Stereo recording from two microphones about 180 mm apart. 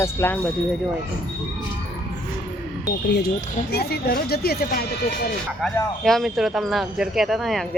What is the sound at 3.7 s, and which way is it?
Speech, 60° left (ahead or behind).